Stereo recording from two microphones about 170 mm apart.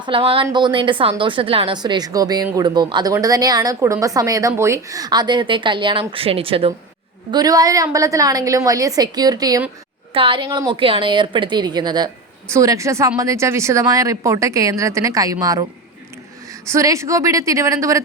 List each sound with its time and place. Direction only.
0.0 s a woman's voice: 30° right (ahead or behind)
7.3 s a woman's voice: 25° right (ahead or behind)
16.6 s a woman's voice: 15° right (ahead or behind)